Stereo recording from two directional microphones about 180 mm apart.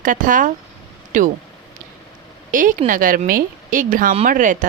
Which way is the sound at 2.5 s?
50° right (ahead or behind).